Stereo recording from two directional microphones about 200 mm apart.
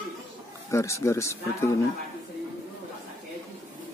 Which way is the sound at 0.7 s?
15° left (ahead or behind).